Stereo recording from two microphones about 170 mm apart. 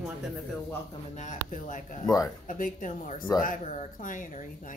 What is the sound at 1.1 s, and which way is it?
A woman's voice, 45° left (ahead or behind).